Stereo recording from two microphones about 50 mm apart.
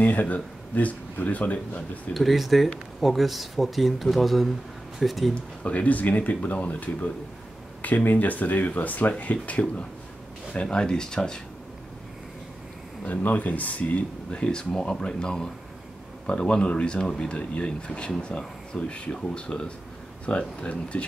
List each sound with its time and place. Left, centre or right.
0.0 s speech: left
2.1 s speech: centre
5.3 s speech: left
13.0 s speech: left